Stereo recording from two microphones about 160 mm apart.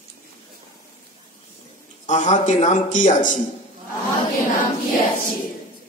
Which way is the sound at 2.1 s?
50° left (ahead or behind).